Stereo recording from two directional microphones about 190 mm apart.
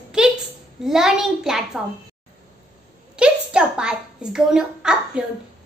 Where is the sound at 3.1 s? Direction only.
5° right (ahead or behind).